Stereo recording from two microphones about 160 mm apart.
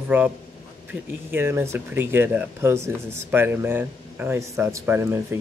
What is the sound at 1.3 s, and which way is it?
Speech, 15° right (ahead or behind).